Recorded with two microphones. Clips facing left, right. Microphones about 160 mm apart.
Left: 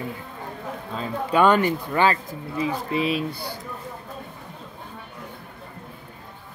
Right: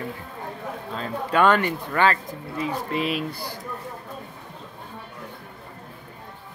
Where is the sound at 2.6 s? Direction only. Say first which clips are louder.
Left 2 dB; 25° left (ahead or behind).